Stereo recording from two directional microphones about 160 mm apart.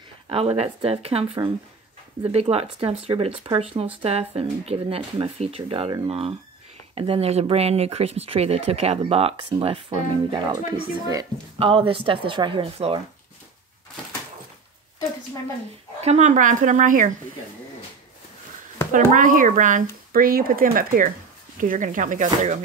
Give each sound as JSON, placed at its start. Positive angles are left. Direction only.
{"t": 0.3, "sound": "speech", "side_deg": -40}
{"t": 11.6, "sound": "speech", "side_deg": -35}
{"t": 16.0, "sound": "speech", "side_deg": -45}
{"t": 18.9, "sound": "speech", "side_deg": -55}